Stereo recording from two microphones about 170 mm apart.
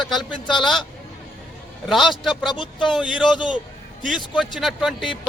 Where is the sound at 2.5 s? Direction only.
25° left (ahead or behind).